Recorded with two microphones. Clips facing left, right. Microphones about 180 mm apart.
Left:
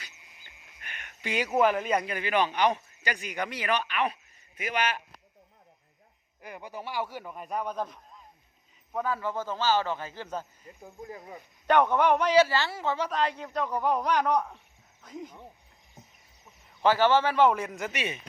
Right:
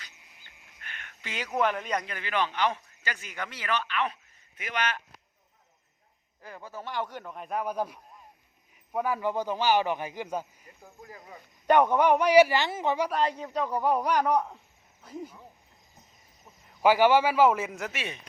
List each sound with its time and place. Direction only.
0.4 s speech: 15° left (ahead or behind)
6.4 s a man's voice: 15° left (ahead or behind); by 10.4 s 10° right (ahead or behind)
10.8 s speech: 20° left (ahead or behind)
11.6 s a man's voice: 10° right (ahead or behind)
16.8 s speech: 10° right (ahead or behind)